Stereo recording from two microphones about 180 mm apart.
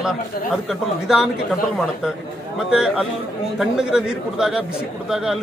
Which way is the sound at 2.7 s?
5° right (ahead or behind).